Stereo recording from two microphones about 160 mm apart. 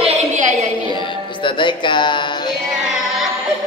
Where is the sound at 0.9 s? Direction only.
30° left (ahead or behind).